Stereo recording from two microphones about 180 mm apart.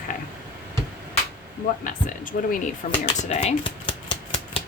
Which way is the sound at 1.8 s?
45° left (ahead or behind).